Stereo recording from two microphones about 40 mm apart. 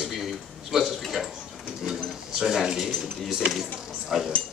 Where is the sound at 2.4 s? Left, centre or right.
Centre.